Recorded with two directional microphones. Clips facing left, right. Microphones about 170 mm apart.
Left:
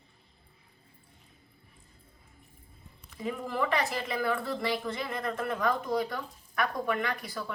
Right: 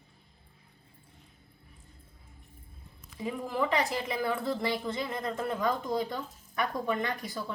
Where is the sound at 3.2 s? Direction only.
15° right (ahead or behind).